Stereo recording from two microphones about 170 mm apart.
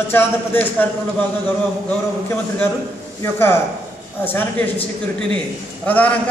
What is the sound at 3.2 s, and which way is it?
Speech, 15° left (ahead or behind).